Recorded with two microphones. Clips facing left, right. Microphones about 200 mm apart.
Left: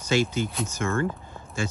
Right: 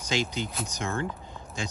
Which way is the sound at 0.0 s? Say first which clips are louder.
Left 6 dB; 15° right (ahead or behind).